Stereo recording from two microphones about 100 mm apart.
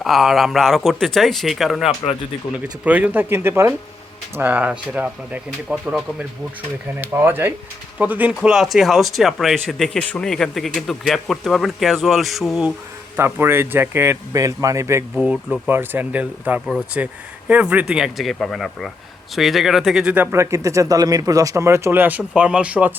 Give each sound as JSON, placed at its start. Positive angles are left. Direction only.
{"t": 0.0, "sound": "speech", "side_deg": 0}
{"t": 2.8, "sound": "speech", "side_deg": -15}
{"t": 7.0, "sound": "speech", "side_deg": -20}
{"t": 8.4, "sound": "speech", "side_deg": -5}
{"t": 13.1, "sound": "speech", "side_deg": -25}
{"t": 15.1, "sound": "speech", "side_deg": -10}
{"t": 20.3, "sound": "speech", "side_deg": -30}